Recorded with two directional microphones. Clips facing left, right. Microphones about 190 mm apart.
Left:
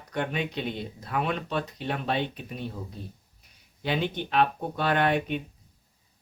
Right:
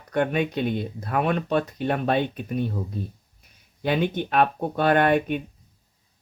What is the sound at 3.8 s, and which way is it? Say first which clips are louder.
Speech: right 5 dB; 50° right (ahead or behind).